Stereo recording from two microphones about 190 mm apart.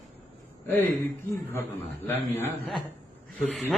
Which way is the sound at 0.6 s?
10° left (ahead or behind).